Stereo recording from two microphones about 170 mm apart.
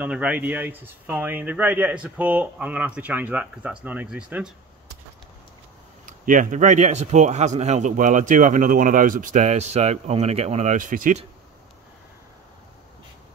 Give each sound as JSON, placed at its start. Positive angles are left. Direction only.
{"t": 0.0, "sound": "speech", "side_deg": -10}
{"t": 6.0, "sound": "speech", "side_deg": -50}